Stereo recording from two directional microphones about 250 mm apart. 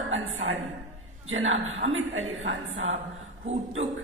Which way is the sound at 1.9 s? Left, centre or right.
Right.